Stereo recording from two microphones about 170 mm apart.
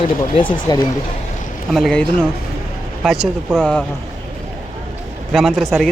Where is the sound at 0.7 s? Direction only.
25° left (ahead or behind).